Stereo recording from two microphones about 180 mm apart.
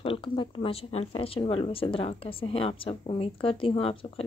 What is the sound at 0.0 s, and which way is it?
Speech, 30° left (ahead or behind).